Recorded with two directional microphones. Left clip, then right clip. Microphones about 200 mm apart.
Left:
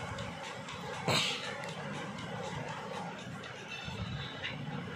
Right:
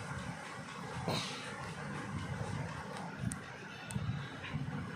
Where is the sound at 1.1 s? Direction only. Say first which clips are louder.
Left 7 dB; centre (ahead or behind).